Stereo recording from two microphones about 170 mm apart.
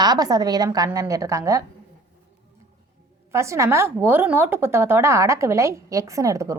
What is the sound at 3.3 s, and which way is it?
A woman's voice, 15° right (ahead or behind).